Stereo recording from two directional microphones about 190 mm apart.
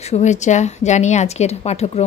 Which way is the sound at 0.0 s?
35° left (ahead or behind).